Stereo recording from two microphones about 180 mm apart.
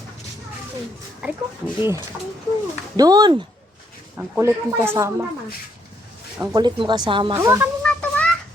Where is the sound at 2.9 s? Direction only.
20° right (ahead or behind).